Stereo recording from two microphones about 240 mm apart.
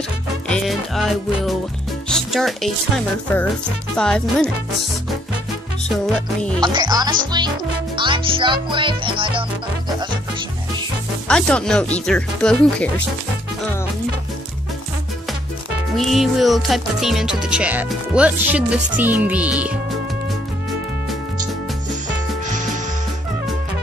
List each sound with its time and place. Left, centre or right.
0.5 s music: centre
3.9 s speech: centre
6.6 s speech: centre
7.9 s music: centre
11.2 s speech: centre
16.0 s speech: centre